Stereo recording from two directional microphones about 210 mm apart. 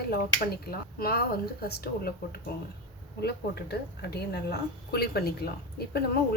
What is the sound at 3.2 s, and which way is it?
A woman's voice, 50° left (ahead or behind).